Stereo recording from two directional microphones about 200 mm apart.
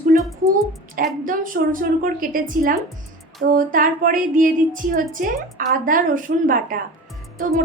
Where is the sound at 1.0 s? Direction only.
45° right (ahead or behind).